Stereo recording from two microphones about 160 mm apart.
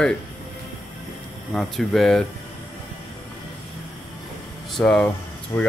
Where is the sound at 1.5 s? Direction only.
Centre (ahead or behind).